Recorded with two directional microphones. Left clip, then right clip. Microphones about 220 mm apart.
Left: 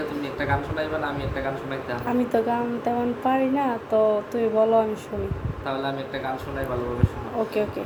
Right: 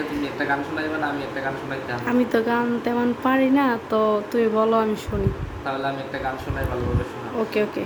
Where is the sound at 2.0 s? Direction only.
15° right (ahead or behind).